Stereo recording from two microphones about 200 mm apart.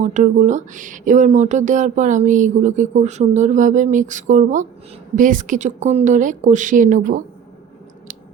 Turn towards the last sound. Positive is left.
turn(degrees=-40)  # may be behind; listen again after turning